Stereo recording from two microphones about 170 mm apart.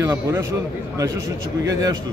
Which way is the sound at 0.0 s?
20° right (ahead or behind).